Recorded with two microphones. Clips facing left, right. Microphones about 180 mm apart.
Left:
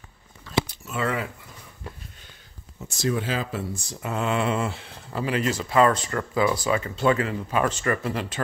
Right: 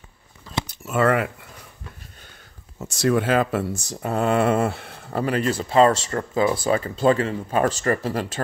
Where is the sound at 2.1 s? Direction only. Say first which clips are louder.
Right 2 dB; 50° right (ahead or behind).